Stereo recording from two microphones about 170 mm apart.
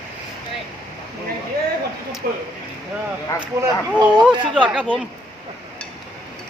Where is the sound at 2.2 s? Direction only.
60° right (ahead or behind).